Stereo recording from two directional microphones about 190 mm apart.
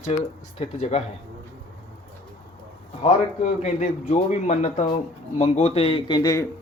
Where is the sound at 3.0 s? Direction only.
35° left (ahead or behind); by 6.5 s 20° left (ahead or behind).